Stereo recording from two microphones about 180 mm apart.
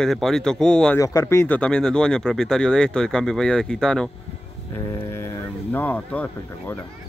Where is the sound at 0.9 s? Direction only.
15° left (ahead or behind).